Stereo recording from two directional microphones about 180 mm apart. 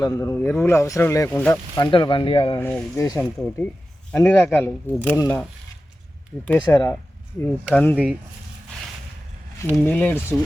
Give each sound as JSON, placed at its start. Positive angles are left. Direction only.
{"t": 0.0, "sound": "speech", "side_deg": 15}
{"t": 2.6, "sound": "speech", "side_deg": 10}
{"t": 9.7, "sound": "speech", "side_deg": 10}